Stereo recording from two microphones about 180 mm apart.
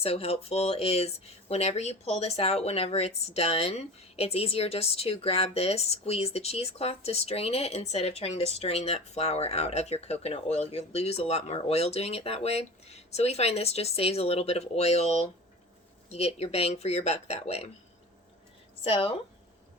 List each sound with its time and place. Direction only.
0.0 s speech: 35° left (ahead or behind)
18.8 s a woman's voice: 30° left (ahead or behind)